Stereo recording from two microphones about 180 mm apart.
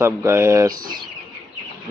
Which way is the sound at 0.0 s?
15° right (ahead or behind).